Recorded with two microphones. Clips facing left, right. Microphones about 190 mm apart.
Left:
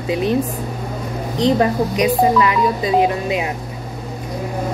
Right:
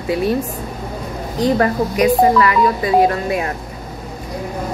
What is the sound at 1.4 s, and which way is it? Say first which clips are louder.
A woman's voice: even; 20° left (ahead or behind).